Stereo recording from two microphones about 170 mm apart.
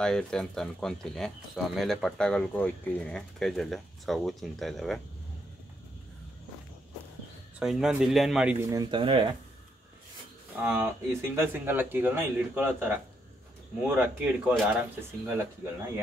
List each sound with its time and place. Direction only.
0.0 s speech: 5° left (ahead or behind)
7.5 s speech: 5° right (ahead or behind)
8.6 s speech: 20° right (ahead or behind)
9.0 s speech: 30° right (ahead or behind)
10.6 s speech: 10° right (ahead or behind)